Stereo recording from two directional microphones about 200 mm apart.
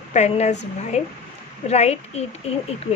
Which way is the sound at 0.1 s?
35° left (ahead or behind).